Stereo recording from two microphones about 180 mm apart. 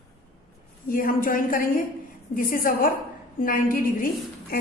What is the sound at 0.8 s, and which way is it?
A woman's voice, 50° left (ahead or behind).